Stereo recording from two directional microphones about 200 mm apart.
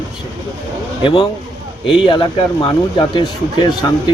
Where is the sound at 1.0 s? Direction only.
25° left (ahead or behind).